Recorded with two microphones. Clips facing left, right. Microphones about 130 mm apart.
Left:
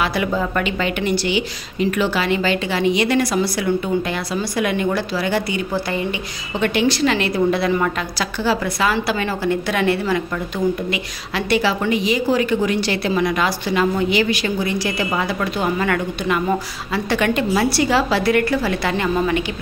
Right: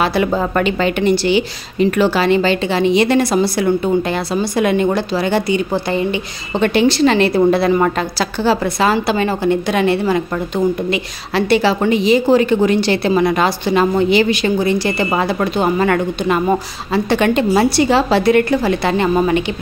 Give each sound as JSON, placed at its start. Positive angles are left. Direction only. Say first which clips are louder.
{"t": 0.0, "sound": "a woman's voice", "louder": "right 4 dB", "side_deg": -35}